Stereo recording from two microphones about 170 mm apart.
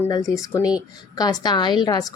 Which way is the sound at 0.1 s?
20° left (ahead or behind).